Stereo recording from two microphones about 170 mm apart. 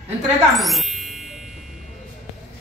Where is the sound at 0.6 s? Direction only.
Centre (ahead or behind).